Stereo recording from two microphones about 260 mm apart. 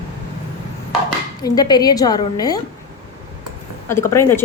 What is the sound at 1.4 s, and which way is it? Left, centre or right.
A woman's voice, centre.